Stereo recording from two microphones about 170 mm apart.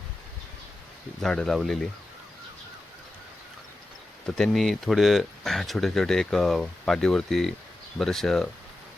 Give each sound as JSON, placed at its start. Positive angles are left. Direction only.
{"t": 1.2, "sound": "speech", "side_deg": 5}
{"t": 4.4, "sound": "speech", "side_deg": 0}